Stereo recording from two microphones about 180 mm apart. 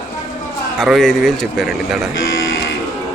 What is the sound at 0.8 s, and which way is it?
A man's voice, centre (ahead or behind).